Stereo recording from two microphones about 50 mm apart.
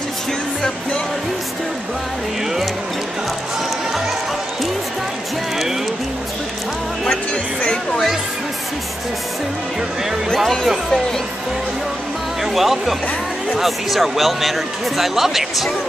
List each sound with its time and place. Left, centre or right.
7.6 s music: centre
10.3 s speech: centre
12.5 s speech: centre